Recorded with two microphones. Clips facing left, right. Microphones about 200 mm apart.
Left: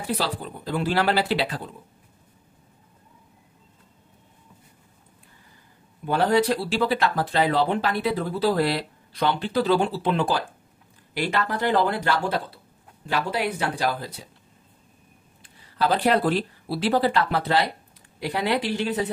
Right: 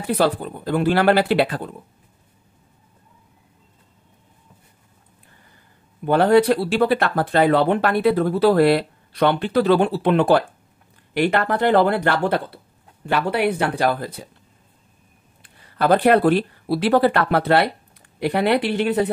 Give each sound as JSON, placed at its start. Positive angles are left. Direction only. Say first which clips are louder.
{"t": 0.1, "sound": "speech", "louder": "right 9 dB", "side_deg": -55}
{"t": 6.0, "sound": "speech", "louder": "right 6 dB", "side_deg": -60}
{"t": 15.4, "sound": "speech", "louder": "right 5 dB", "side_deg": -55}